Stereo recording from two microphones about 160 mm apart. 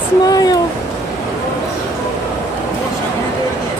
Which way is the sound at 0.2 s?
25° left (ahead or behind).